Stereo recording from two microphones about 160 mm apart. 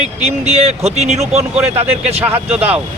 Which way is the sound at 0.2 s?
40° right (ahead or behind).